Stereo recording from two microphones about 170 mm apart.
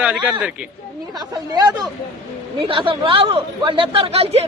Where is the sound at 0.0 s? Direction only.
10° right (ahead or behind).